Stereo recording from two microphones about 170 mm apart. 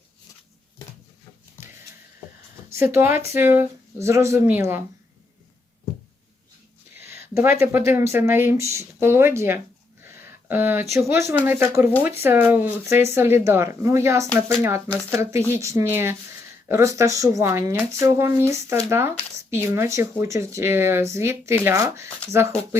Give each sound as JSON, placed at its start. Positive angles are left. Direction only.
{"t": 2.7, "sound": "speech", "side_deg": -15}
{"t": 7.0, "sound": "speech", "side_deg": -15}
{"t": 10.0, "sound": "a sound", "side_deg": -10}
{"t": 11.1, "sound": "speech", "side_deg": -15}